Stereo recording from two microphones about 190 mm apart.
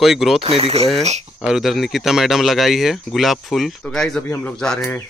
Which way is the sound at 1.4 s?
Centre (ahead or behind).